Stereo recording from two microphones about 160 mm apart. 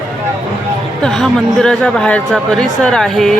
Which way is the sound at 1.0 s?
5° left (ahead or behind).